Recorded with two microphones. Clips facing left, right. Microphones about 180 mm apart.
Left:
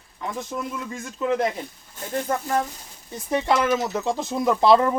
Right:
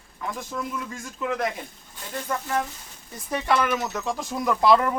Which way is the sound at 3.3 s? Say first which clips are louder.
Left 3 dB; 25° left (ahead or behind).